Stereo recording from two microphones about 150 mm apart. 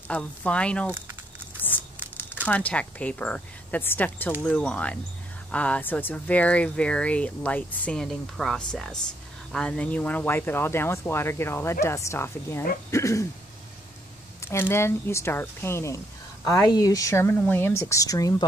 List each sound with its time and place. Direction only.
0.1 s speech: 10° left (ahead or behind)
2.4 s speech: 10° left (ahead or behind)
14.4 s speech: 15° left (ahead or behind)